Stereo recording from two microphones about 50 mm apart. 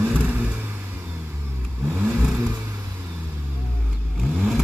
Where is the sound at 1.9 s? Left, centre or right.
Right.